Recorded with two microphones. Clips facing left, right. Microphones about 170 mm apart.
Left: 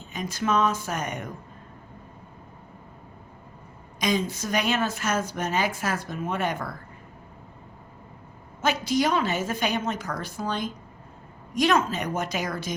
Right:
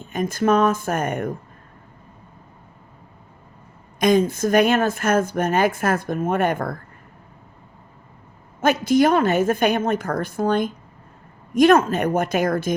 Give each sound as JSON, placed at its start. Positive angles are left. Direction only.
{"t": 0.0, "sound": "speech", "side_deg": -50}
{"t": 4.0, "sound": "speech", "side_deg": -50}
{"t": 8.6, "sound": "speech", "side_deg": -50}